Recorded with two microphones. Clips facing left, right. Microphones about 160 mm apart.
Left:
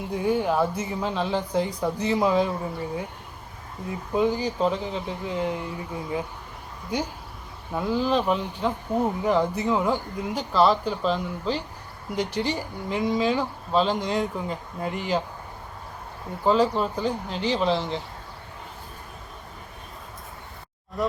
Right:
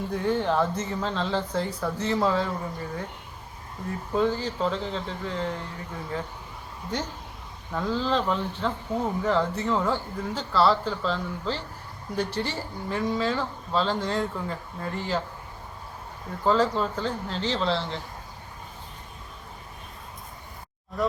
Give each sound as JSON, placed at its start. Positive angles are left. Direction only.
{"t": 0.0, "sound": "speech", "side_deg": 10}
{"t": 16.4, "sound": "speech", "side_deg": 15}